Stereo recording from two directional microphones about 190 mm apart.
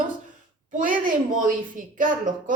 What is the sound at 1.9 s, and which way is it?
Speech, 45° right (ahead or behind).